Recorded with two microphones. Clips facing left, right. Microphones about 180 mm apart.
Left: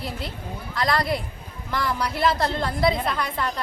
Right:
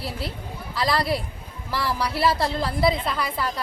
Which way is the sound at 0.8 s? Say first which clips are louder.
Even; 5° right (ahead or behind).